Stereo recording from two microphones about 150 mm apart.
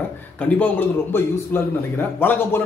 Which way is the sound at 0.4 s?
10° left (ahead or behind).